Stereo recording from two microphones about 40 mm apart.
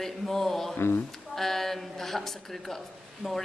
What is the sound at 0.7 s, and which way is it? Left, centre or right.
Speech, left.